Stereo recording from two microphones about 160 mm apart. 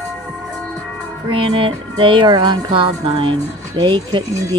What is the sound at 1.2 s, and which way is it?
Music, 30° right (ahead or behind).